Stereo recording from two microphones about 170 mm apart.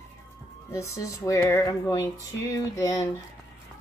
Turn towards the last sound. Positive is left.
turn(degrees=20)  # may be behind; listen again after turning